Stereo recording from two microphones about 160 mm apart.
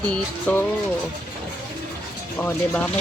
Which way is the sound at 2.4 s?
10° left (ahead or behind).